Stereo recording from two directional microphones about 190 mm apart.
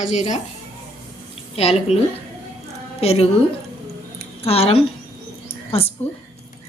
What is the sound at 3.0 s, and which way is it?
Speech, 30° left (ahead or behind).